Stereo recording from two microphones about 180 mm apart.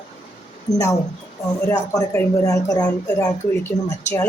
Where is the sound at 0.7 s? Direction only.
20° left (ahead or behind).